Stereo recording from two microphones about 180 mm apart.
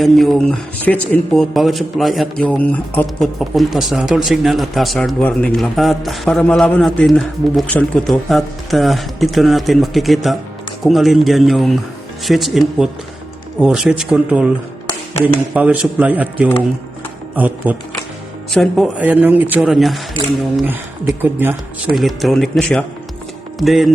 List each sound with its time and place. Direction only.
0.0 s speech: centre (ahead or behind)
3.5 s speech: centre (ahead or behind)
21.2 s speech: 10° right (ahead or behind)
21.9 s speech: centre (ahead or behind)